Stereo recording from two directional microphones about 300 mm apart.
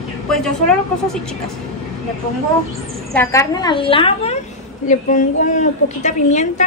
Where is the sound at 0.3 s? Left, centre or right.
Centre.